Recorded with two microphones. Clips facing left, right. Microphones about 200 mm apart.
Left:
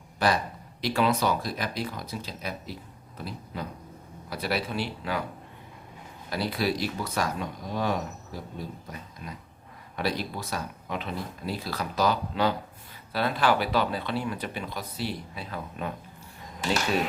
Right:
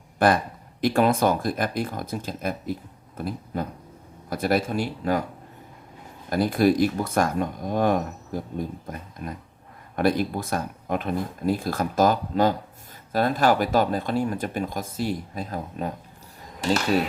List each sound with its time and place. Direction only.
0.2 s speech: 50° right (ahead or behind)
3.2 s pig: 50° right (ahead or behind)
4.3 s speech: 50° right (ahead or behind)
6.3 s speech: 50° right (ahead or behind)